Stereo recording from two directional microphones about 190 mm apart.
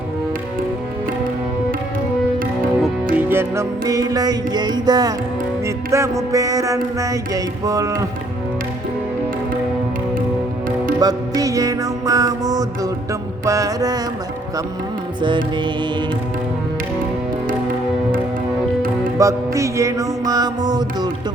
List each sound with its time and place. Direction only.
3.2 s music: 10° right (ahead or behind)
11.0 s music: 20° right (ahead or behind)
19.2 s music: 15° right (ahead or behind)